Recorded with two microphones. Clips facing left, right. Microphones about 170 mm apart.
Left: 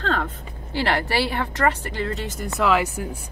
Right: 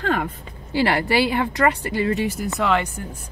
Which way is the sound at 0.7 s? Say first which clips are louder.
Right 3 dB; 15° right (ahead or behind).